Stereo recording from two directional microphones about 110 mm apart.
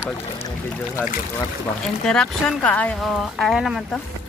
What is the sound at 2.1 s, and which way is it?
Speech, 5° left (ahead or behind).